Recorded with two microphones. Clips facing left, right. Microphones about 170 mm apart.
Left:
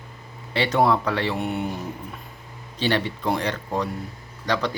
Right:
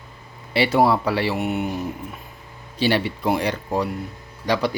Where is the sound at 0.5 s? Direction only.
10° right (ahead or behind).